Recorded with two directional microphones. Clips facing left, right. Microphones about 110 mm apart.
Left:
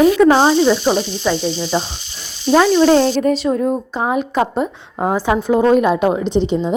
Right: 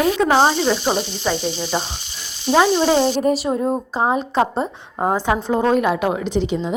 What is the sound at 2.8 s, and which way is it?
Speech, 10° right (ahead or behind).